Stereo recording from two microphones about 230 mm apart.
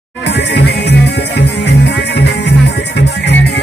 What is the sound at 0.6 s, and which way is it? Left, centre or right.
Music, left.